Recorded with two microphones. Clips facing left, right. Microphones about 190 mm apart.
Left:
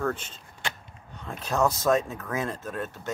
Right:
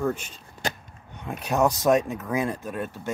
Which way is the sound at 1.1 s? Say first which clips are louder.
Right 3 dB; 15° right (ahead or behind).